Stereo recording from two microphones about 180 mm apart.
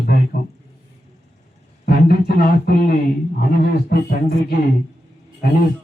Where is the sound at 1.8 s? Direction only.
60° left (ahead or behind).